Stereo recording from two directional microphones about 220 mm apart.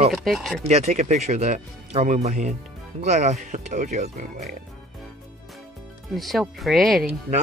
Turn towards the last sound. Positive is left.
turn(degrees=0)  # may be behind; listen again after turning